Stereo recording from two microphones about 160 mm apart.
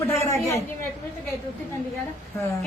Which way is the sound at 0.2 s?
20° left (ahead or behind).